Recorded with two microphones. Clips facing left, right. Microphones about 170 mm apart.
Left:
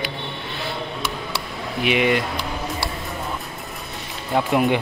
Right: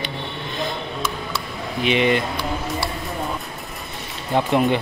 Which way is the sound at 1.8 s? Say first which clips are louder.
Right 1 dB; 10° left (ahead or behind).